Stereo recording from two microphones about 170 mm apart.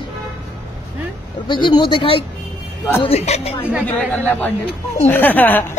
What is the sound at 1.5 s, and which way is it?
Speech, 25° left (ahead or behind).